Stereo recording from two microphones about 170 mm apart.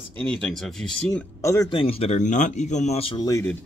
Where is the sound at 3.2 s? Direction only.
20° left (ahead or behind).